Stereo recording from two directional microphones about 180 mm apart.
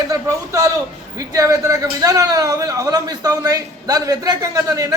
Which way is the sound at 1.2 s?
20° right (ahead or behind).